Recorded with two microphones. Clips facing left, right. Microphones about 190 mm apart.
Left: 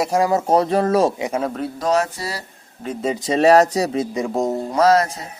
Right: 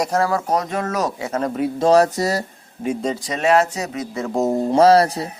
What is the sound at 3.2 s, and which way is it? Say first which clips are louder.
Speech: left 6 dB; 30° left (ahead or behind).